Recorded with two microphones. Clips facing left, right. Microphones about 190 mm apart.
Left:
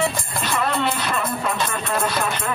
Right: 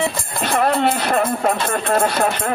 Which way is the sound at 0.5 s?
60° right (ahead or behind).